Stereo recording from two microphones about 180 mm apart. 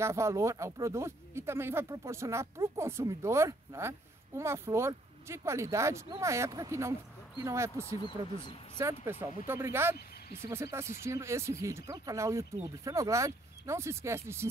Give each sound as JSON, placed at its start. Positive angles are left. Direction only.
{"t": 0.0, "sound": "speech", "side_deg": -15}